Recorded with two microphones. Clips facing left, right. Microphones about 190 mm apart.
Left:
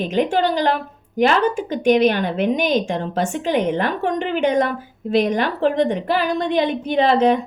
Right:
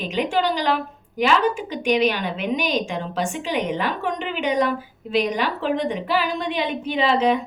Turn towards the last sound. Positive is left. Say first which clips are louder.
# left 4 dB
turn(degrees=45)  # may be behind; listen again after turning